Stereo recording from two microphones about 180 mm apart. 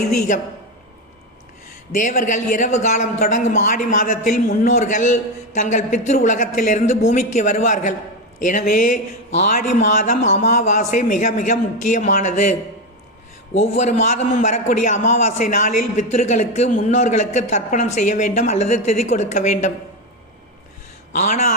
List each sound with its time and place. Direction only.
1.9 s a man's voice: 45° left (ahead or behind)
21.1 s a man's voice: 40° left (ahead or behind)